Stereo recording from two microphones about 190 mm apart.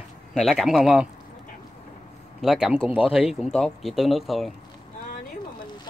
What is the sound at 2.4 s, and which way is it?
Speech, centre (ahead or behind).